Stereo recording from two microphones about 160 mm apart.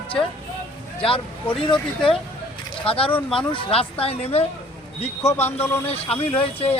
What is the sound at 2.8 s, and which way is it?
Speech, 35° left (ahead or behind).